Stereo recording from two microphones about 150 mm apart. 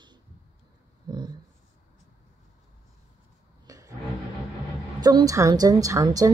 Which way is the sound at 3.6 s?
20° right (ahead or behind).